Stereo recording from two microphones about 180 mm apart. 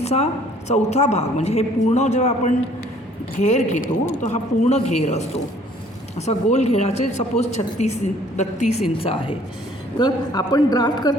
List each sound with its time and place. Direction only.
0.0 s a woman's voice: 35° left (ahead or behind)
10.0 s a man's voice: 20° left (ahead or behind)